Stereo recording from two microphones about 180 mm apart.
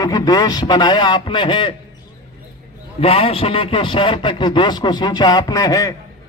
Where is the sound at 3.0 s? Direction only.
30° left (ahead or behind).